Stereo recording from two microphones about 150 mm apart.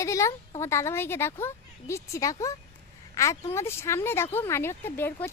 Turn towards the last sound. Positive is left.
turn(degrees=15)  # may be behind; listen again after turning